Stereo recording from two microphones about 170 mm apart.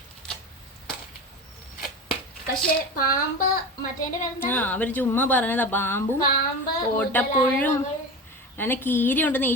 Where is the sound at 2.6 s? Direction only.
55° left (ahead or behind).